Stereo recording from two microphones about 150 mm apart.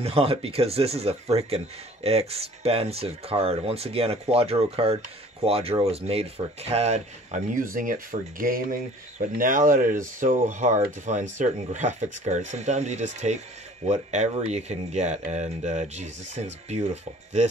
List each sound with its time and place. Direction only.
0.0 s speech: 40° right (ahead or behind)